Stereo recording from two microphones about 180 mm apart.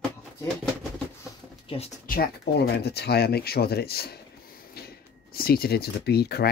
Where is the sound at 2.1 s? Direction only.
60° left (ahead or behind).